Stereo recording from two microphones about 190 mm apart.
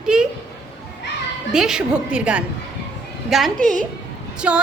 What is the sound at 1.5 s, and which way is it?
Speech, 5° right (ahead or behind).